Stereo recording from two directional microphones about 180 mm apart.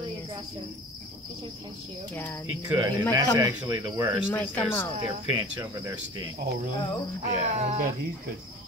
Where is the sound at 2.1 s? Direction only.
10° left (ahead or behind).